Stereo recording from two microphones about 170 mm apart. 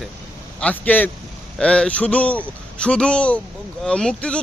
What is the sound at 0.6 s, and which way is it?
A man's voice, 10° left (ahead or behind).